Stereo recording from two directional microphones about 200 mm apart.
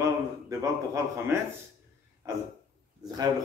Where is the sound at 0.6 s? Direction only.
15° right (ahead or behind).